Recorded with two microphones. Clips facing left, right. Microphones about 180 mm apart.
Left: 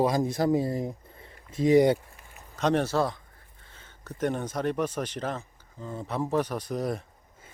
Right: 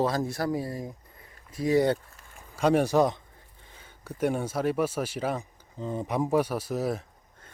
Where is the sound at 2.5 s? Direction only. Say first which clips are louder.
Right 3 dB; 10° right (ahead or behind).